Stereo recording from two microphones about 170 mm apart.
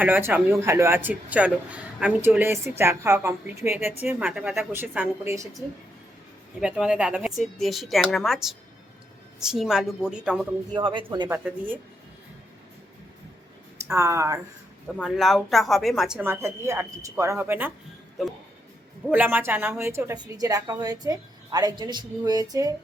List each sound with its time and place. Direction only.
0.0 s speech: 10° right (ahead or behind)
6.6 s speech: 5° right (ahead or behind)
10.8 s a woman's voice: 30° right (ahead or behind)
11.4 s speech: 10° right (ahead or behind)
13.9 s speech: 15° right (ahead or behind)
15.0 s speech: centre (ahead or behind)
19.1 s a woman's voice: 10° right (ahead or behind)